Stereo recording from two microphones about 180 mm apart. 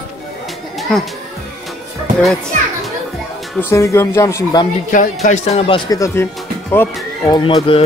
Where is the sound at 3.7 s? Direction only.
15° left (ahead or behind).